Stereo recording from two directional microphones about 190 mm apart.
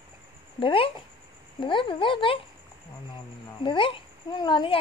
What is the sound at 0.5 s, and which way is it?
A child's voice, 25° left (ahead or behind).